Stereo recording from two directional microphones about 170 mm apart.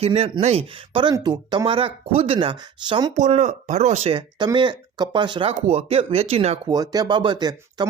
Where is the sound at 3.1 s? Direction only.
45° right (ahead or behind).